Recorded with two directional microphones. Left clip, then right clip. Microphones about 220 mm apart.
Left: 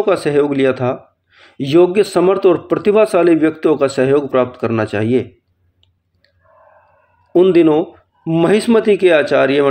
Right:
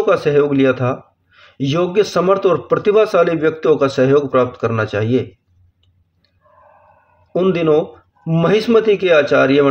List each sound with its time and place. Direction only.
0.0 s speech: 35° left (ahead or behind)
7.3 s speech: 35° left (ahead or behind)